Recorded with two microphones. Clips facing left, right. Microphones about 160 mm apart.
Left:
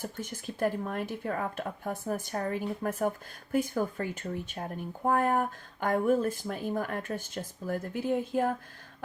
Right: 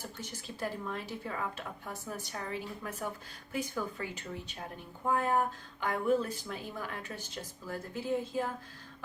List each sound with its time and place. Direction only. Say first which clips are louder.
0.0 s speech: left 6 dB; 50° left (ahead or behind)